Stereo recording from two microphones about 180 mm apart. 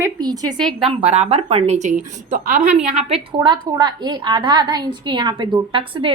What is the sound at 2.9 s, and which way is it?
A woman's voice, 30° right (ahead or behind).